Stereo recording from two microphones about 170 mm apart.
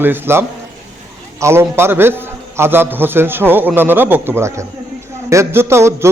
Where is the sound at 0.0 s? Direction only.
15° right (ahead or behind).